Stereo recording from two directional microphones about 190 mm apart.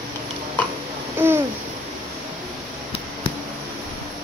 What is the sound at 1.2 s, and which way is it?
Babbling, 10° right (ahead or behind).